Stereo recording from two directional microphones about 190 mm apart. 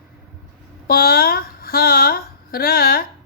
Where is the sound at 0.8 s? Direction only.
50° left (ahead or behind).